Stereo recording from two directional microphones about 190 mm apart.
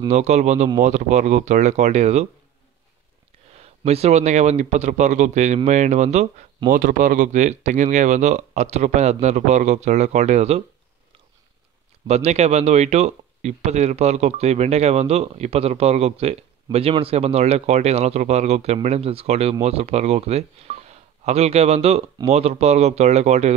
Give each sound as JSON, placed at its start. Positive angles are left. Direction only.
{"t": 0.1, "sound": "speech", "side_deg": -35}
{"t": 3.5, "sound": "speech", "side_deg": -35}
{"t": 12.1, "sound": "speech", "side_deg": -35}